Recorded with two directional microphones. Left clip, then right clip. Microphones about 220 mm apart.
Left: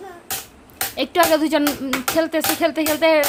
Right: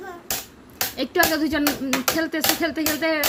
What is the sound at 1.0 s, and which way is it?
A woman's voice, 15° left (ahead or behind).